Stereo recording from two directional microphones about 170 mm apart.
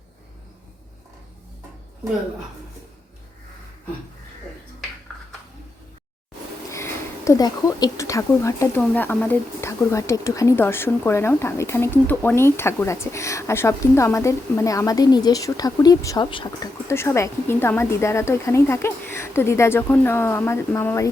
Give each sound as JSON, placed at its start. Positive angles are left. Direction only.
{"t": 6.7, "sound": "speech", "side_deg": 15}
{"t": 16.9, "sound": "speech", "side_deg": 15}